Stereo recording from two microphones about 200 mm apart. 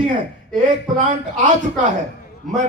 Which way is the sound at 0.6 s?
40° right (ahead or behind).